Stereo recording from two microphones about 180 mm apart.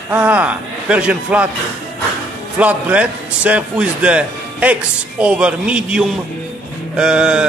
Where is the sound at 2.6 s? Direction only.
10° right (ahead or behind).